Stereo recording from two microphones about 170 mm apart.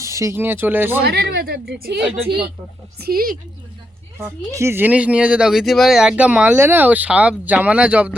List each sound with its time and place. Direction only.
0.0 s speech: 15° right (ahead or behind)
1.0 s a woman's voice: 70° right (ahead or behind)
3.0 s a woman's voice: 60° right (ahead or behind)
4.2 s speech: 15° right (ahead or behind)